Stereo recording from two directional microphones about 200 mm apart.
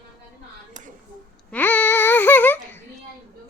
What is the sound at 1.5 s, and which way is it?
Babbling, 10° left (ahead or behind).